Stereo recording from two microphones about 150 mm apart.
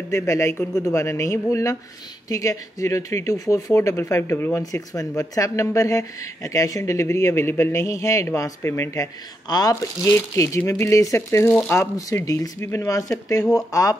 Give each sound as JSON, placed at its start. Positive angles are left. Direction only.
{"t": 0.1, "sound": "speech", "side_deg": 20}